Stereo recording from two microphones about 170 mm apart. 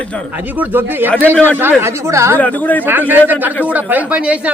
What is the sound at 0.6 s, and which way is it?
Speech, 10° right (ahead or behind).